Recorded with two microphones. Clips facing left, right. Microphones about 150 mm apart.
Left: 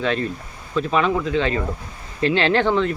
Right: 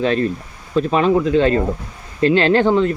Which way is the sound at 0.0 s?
40° right (ahead or behind).